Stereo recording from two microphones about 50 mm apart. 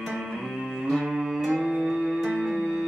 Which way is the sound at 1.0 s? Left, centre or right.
Centre.